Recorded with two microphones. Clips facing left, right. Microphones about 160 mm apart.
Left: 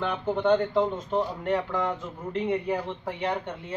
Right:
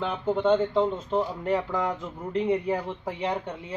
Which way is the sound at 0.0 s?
5° right (ahead or behind).